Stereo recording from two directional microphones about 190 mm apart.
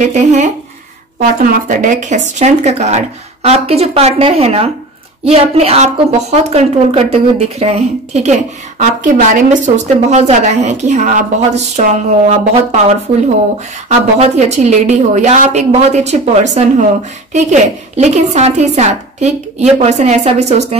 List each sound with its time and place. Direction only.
0.0 s speech: 40° right (ahead or behind)
13.8 s speech: 35° right (ahead or behind)